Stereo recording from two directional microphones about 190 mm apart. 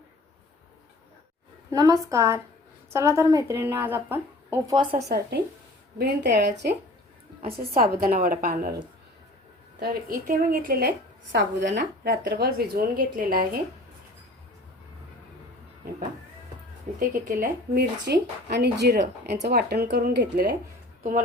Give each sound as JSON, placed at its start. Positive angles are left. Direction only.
{"t": 1.7, "sound": "a woman's voice", "side_deg": -20}
{"t": 4.7, "sound": "a woman's voice", "side_deg": -25}
{"t": 5.0, "sound": "speech", "side_deg": -60}
{"t": 7.8, "sound": "a woman's voice", "side_deg": -50}
{"t": 9.8, "sound": "a woman's voice", "side_deg": -50}
{"t": 17.0, "sound": "speech", "side_deg": -45}
{"t": 21.0, "sound": "speech", "side_deg": -40}